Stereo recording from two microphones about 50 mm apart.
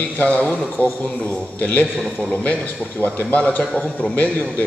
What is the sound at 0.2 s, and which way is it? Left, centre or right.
A man's voice, left.